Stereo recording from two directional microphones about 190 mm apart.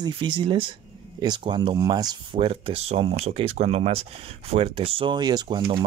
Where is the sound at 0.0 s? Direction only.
25° right (ahead or behind).